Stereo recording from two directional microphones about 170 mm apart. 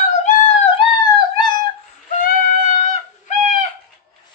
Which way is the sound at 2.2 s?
55° left (ahead or behind).